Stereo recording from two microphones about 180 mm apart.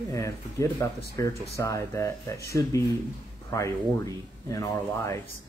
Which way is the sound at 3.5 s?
15° left (ahead or behind).